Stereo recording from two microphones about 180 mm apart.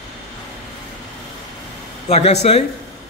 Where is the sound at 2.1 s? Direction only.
35° left (ahead or behind).